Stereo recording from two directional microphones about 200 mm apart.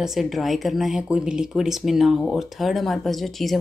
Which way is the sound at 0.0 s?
Centre (ahead or behind).